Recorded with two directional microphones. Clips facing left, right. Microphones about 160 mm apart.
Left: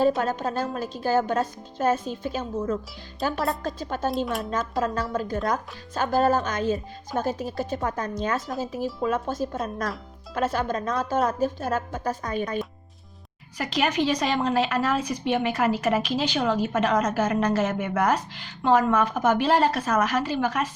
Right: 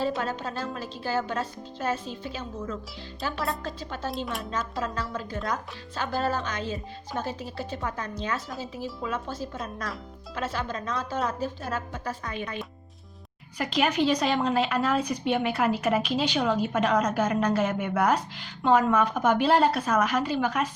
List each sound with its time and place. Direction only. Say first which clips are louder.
0.0 s a woman's voice: left 6 dB; 45° left (ahead or behind)
13.6 s a woman's voice: even; 5° left (ahead or behind)